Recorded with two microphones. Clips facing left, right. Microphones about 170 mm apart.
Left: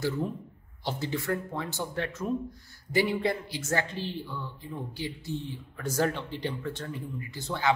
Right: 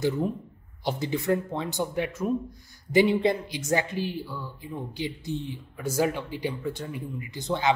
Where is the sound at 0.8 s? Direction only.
15° right (ahead or behind).